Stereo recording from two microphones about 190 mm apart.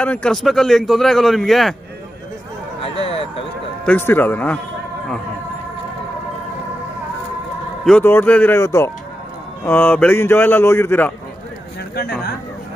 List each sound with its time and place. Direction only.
0.0 s a man's voice: 5° left (ahead or behind)
2.8 s vehicle: 30° left (ahead or behind)
3.8 s a man's voice: 10° left (ahead or behind)
7.8 s a man's voice: 10° left (ahead or behind)
11.9 s speech: 55° left (ahead or behind)